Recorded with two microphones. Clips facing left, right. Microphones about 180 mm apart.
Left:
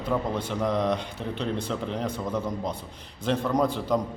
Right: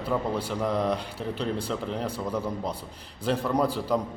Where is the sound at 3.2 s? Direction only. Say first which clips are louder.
Left 1 dB; 10° right (ahead or behind).